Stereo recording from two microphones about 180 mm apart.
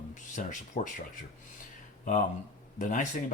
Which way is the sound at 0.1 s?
45° left (ahead or behind).